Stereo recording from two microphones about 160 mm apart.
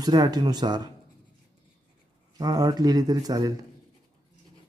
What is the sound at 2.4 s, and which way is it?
Speech, 25° right (ahead or behind).